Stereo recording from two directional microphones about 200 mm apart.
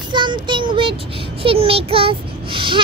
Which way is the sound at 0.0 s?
25° right (ahead or behind).